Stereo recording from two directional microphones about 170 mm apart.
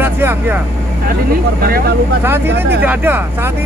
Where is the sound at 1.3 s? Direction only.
65° right (ahead or behind).